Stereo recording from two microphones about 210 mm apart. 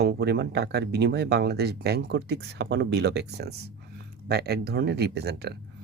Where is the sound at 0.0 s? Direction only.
50° right (ahead or behind).